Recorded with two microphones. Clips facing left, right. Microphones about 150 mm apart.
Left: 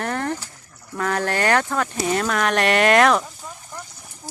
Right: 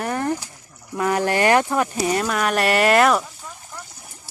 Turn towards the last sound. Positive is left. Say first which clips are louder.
# even
turn(degrees=-5)  # may be behind; listen again after turning